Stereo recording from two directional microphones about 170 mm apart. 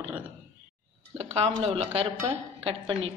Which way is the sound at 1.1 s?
35° right (ahead or behind).